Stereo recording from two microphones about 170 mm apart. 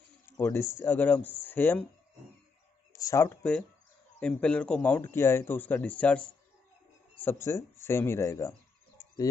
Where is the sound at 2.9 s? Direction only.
20° left (ahead or behind).